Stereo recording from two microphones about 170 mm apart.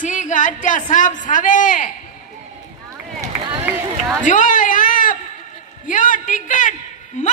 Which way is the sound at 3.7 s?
10° right (ahead or behind).